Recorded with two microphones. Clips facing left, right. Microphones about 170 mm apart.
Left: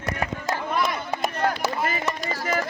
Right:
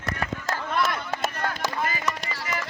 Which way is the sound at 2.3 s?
40° left (ahead or behind).